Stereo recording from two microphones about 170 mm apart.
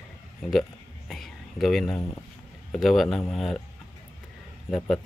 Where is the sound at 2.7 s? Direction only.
Centre (ahead or behind).